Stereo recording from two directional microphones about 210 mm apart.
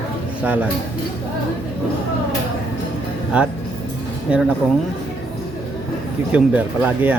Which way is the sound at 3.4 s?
5° right (ahead or behind).